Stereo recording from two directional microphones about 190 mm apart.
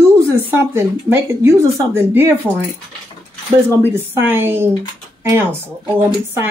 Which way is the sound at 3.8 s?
10° right (ahead or behind).